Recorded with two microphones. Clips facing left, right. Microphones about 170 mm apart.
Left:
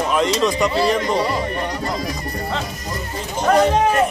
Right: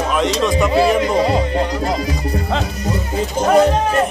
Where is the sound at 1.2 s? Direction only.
90° right.